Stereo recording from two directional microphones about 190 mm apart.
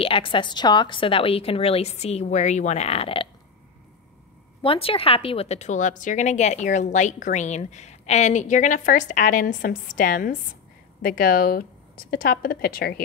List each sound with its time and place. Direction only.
0.0 s a woman's voice: 25° left (ahead or behind)
4.6 s a woman's voice: 30° left (ahead or behind); by 13.0 s 55° left (ahead or behind)